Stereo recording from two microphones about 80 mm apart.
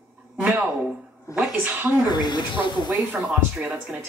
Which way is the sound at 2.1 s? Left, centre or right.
Left.